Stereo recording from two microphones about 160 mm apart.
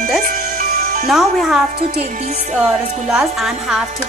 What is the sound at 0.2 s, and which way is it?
Music, 55° right (ahead or behind).